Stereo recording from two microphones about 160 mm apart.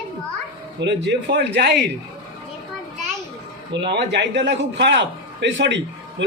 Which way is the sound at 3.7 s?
90° right.